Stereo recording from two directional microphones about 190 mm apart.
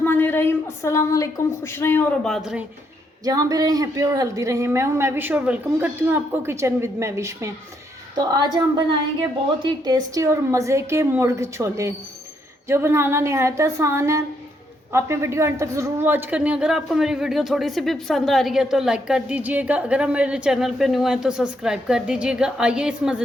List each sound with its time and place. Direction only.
0.0 s a woman's voice: 10° left (ahead or behind)
3.2 s a woman's voice: 20° right (ahead or behind)